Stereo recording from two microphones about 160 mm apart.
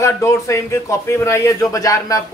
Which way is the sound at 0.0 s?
20° left (ahead or behind).